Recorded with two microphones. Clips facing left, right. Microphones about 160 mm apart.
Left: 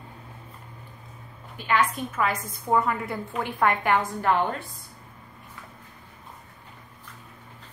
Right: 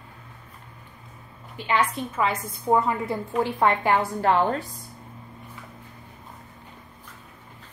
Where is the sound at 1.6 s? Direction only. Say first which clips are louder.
Even; 25° right (ahead or behind).